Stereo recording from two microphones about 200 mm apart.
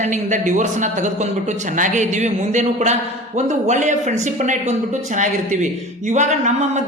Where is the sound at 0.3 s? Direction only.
40° right (ahead or behind).